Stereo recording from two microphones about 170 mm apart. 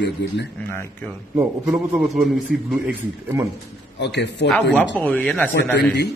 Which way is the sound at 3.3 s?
15° right (ahead or behind).